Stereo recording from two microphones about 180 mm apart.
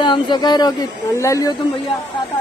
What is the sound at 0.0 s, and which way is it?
Speech, 25° left (ahead or behind).